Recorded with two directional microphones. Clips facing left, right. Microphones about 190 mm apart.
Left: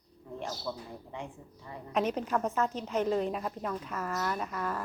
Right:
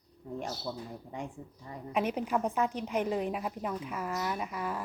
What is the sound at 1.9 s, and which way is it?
A woman's voice, 10° right (ahead or behind).